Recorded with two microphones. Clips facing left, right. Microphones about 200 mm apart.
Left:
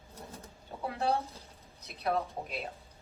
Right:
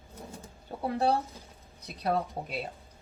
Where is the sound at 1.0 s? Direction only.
30° right (ahead or behind).